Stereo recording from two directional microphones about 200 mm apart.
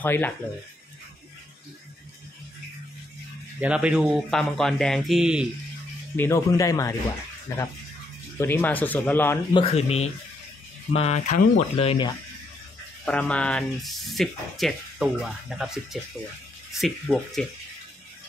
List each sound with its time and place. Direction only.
0.0 s speech: 10° left (ahead or behind)
3.6 s speech: 5° right (ahead or behind)
6.1 s speech: 15° left (ahead or behind)
9.5 s speech: 30° left (ahead or behind)
13.0 s speech: 5° left (ahead or behind)